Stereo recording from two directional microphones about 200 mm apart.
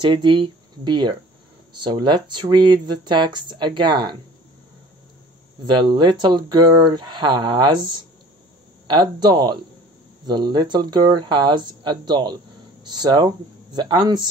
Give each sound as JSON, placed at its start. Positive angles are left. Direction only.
{"t": 0.0, "sound": "speech", "side_deg": -25}
{"t": 5.7, "sound": "speech", "side_deg": -20}